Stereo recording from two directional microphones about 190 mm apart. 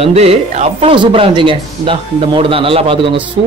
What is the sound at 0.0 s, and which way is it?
A man's voice, 35° right (ahead or behind).